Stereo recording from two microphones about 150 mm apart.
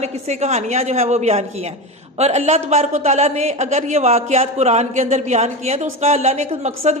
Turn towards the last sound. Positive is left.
turn(degrees=-45)  # may be behind; listen again after turning